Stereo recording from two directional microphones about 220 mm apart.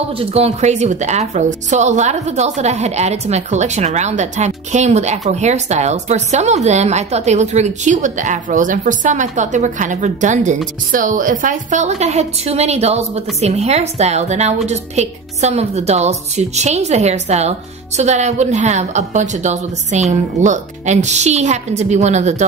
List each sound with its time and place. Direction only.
0.2 s a woman's voice: 30° right (ahead or behind)